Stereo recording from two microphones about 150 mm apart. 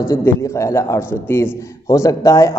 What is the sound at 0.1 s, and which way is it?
A man's voice, 15° left (ahead or behind).